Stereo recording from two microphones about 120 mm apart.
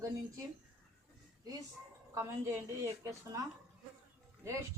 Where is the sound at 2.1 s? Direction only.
20° right (ahead or behind).